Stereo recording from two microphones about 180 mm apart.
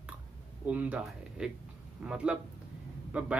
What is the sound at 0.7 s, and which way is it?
Speech, 5° right (ahead or behind).